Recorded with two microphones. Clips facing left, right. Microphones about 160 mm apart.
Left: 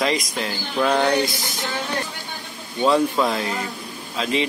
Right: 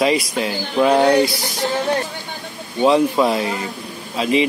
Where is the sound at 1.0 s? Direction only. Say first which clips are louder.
Right 6 dB; 35° right (ahead or behind).